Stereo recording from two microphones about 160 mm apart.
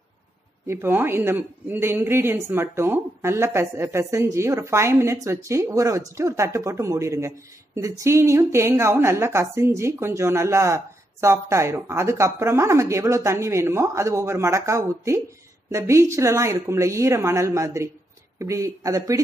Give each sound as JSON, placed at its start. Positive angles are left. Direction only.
{"t": 0.7, "sound": "speech", "side_deg": -15}